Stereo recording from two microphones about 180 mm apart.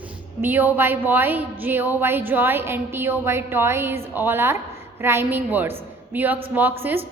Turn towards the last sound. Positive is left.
turn(degrees=-10)  # may be behind; listen again after turning